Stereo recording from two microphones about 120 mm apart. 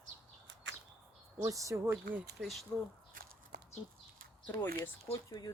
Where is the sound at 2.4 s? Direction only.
Centre (ahead or behind).